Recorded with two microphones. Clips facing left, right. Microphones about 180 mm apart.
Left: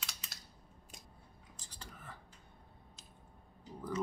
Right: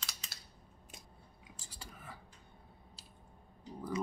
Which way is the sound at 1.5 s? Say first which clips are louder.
Right 1 dB; 10° right (ahead or behind).